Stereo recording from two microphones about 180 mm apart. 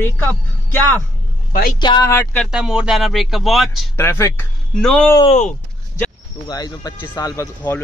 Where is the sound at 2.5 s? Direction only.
5° right (ahead or behind).